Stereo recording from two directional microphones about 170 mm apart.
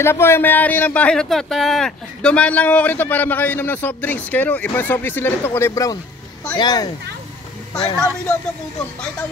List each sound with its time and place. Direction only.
0.0 s a child's voice: 15° left (ahead or behind)
7.7 s speech: 5° left (ahead or behind)